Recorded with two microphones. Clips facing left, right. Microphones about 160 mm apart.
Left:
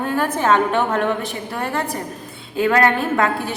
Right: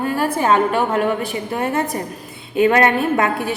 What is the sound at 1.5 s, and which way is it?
A woman's voice, 20° right (ahead or behind).